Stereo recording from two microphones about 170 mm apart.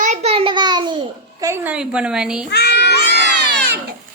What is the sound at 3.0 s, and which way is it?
Baby cry, 85° right.